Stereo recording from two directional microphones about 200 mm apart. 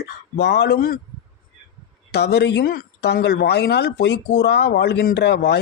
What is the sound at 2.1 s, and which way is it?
Speech, 55° left (ahead or behind).